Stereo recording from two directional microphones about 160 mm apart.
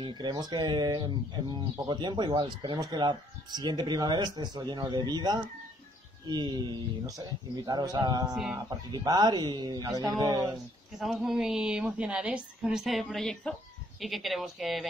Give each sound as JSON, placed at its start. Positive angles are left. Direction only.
{"t": 0.0, "sound": "speech", "side_deg": -25}
{"t": 11.0, "sound": "a woman's voice", "side_deg": 0}